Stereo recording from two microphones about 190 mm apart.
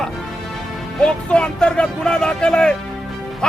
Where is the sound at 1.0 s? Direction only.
5° left (ahead or behind).